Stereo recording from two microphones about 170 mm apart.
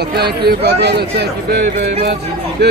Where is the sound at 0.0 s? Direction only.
70° right (ahead or behind).